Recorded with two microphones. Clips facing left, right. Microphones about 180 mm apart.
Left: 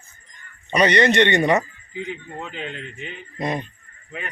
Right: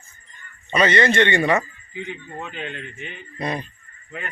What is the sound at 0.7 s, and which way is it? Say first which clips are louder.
Speech: left 1 dB; 15° left (ahead or behind).